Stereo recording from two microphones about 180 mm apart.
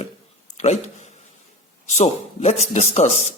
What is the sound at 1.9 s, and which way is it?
Speech, 35° left (ahead or behind).